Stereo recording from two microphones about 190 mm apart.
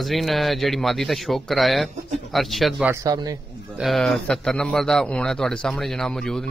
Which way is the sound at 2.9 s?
15° right (ahead or behind).